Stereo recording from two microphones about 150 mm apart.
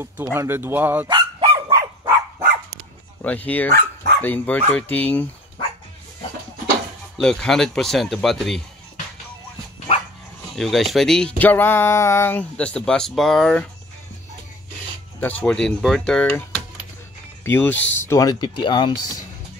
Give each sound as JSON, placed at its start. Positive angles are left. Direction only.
{"t": 0.0, "sound": "speech", "side_deg": -15}
{"t": 1.0, "sound": "dog", "side_deg": -35}
{"t": 3.2, "sound": "speech", "side_deg": 10}
{"t": 3.7, "sound": "dog", "side_deg": -90}
{"t": 4.2, "sound": "speech", "side_deg": 10}
{"t": 7.2, "sound": "speech", "side_deg": 5}
{"t": 10.5, "sound": "speech", "side_deg": 0}
{"t": 15.1, "sound": "speech", "side_deg": 10}